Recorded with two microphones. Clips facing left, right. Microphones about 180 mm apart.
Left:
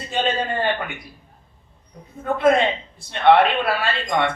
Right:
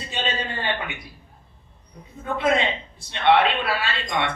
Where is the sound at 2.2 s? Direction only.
50° left (ahead or behind).